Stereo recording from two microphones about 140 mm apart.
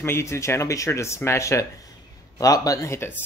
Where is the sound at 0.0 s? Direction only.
20° left (ahead or behind).